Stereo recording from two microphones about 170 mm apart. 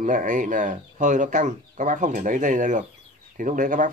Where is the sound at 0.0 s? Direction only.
50° right (ahead or behind).